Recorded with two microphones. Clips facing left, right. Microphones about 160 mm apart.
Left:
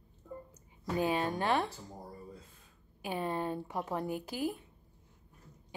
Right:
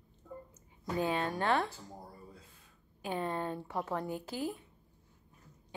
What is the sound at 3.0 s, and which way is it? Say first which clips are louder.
A woman's voice: left 1 dB; 15° left (ahead or behind).